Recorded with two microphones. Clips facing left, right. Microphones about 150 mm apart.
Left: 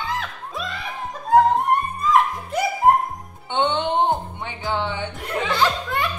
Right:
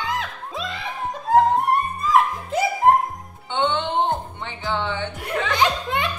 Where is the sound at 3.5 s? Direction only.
20° left (ahead or behind).